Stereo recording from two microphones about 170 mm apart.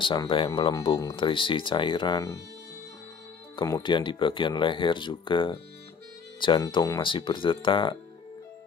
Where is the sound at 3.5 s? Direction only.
25° left (ahead or behind).